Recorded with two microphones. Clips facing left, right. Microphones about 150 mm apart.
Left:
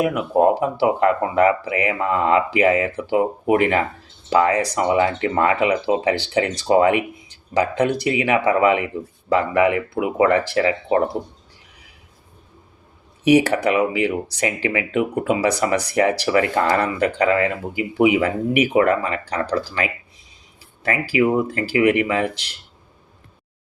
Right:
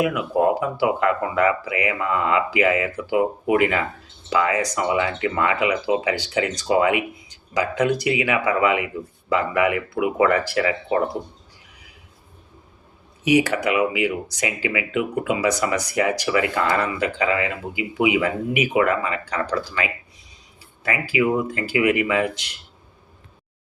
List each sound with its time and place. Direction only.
0.0 s speech: 35° left (ahead or behind)
13.2 s speech: 35° left (ahead or behind)